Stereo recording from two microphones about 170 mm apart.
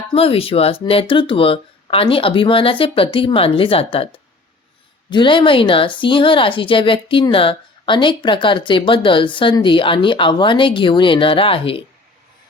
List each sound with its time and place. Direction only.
0.1 s speech: 35° left (ahead or behind)
5.1 s a woman's voice: 30° left (ahead or behind)